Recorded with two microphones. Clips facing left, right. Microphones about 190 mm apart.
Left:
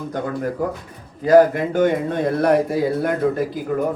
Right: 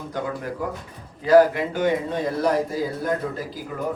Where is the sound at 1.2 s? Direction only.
45° left (ahead or behind); by 3.6 s 60° left (ahead or behind).